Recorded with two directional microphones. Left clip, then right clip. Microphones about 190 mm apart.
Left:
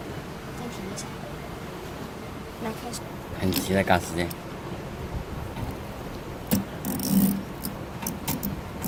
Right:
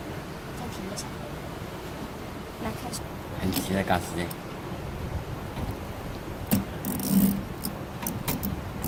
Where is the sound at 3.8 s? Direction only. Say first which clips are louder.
Left 5 dB; 35° left (ahead or behind).